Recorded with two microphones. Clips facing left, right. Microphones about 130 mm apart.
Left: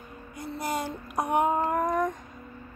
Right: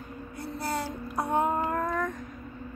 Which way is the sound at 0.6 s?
15° left (ahead or behind).